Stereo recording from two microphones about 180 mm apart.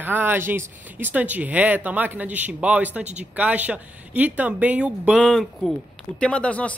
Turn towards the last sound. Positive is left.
turn(degrees=5)  # may be behind; listen again after turning